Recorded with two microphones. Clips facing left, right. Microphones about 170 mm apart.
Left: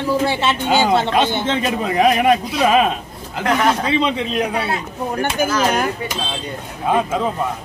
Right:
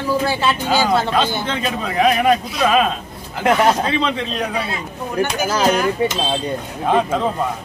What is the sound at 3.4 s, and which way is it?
Speech, 25° right (ahead or behind).